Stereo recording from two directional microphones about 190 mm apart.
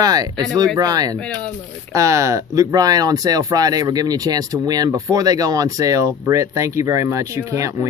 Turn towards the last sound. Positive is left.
turn(degrees=-15)  # may be behind; listen again after turning